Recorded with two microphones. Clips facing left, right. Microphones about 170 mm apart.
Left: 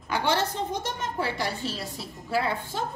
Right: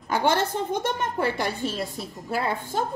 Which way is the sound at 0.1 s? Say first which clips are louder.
Right 3 dB; 50° right (ahead or behind).